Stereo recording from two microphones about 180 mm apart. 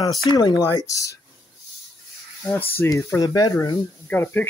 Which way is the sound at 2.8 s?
15° left (ahead or behind).